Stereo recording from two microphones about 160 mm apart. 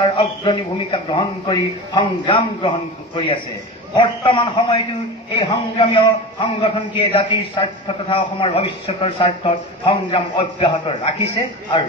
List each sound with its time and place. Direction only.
0.0 s a man's voice: 30° left (ahead or behind)
5.8 s a man's voice: 30° left (ahead or behind)